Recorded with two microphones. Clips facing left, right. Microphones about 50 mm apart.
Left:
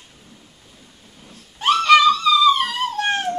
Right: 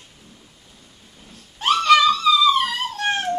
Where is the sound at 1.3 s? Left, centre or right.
Centre.